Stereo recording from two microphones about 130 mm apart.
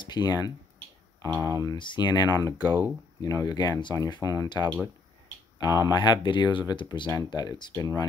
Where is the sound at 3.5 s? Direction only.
30° left (ahead or behind).